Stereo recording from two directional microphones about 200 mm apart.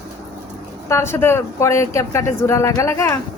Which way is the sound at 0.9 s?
15° left (ahead or behind).